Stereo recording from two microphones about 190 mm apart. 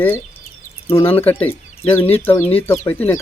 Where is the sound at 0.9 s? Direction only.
10° left (ahead or behind).